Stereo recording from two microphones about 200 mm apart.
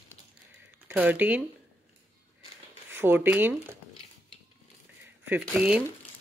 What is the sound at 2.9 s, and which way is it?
Speech, 10° right (ahead or behind).